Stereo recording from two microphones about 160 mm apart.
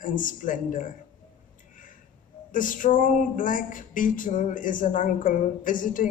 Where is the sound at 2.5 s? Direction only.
55° left (ahead or behind).